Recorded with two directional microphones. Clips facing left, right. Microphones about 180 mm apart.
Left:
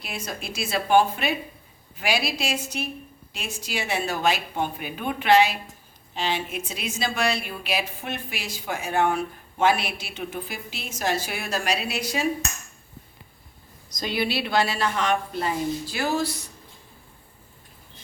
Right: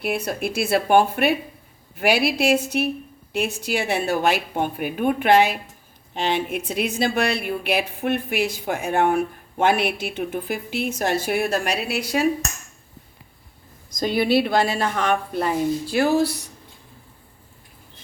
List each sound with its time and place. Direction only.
0.0 s speech: 60° right (ahead or behind)
13.9 s a woman's voice: 50° right (ahead or behind)